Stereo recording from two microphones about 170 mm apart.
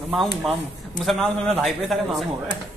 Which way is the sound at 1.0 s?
Centre (ahead or behind).